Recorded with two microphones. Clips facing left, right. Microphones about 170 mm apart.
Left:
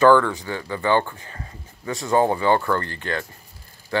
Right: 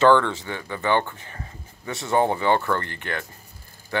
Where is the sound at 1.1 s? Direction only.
20° right (ahead or behind).